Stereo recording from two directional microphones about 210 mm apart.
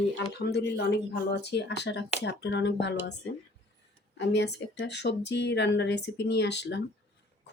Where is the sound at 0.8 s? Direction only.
50° left (ahead or behind).